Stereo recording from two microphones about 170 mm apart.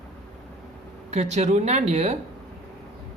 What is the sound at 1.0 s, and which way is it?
Speech, 40° right (ahead or behind).